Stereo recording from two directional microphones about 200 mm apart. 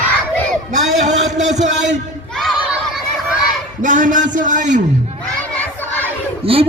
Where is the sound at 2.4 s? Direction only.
Centre (ahead or behind).